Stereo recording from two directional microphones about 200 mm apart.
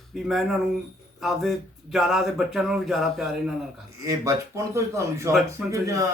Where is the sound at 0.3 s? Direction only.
Centre (ahead or behind).